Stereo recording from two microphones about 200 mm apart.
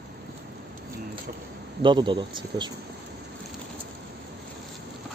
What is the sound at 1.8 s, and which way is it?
Speech, 25° right (ahead or behind).